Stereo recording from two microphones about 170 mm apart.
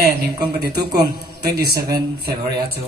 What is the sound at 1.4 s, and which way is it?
Speech, 70° right (ahead or behind).